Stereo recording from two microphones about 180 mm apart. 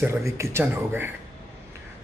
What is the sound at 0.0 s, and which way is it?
Speech, 15° right (ahead or behind).